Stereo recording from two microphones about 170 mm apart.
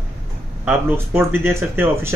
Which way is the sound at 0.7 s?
10° right (ahead or behind).